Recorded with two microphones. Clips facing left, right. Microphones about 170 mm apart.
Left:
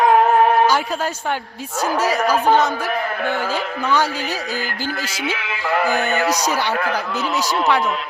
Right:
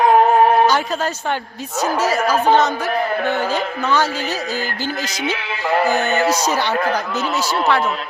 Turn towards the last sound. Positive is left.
turn(degrees=10)  # may be behind; listen again after turning